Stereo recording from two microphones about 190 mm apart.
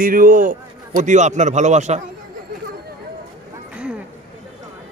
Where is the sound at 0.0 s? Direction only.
45° right (ahead or behind).